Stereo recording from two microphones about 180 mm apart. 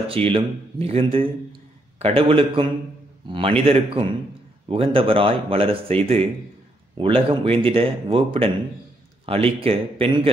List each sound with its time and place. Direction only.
0.1 s a man's voice: 30° right (ahead or behind)